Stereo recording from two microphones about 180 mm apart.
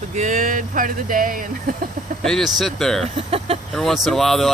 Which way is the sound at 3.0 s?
35° right (ahead or behind).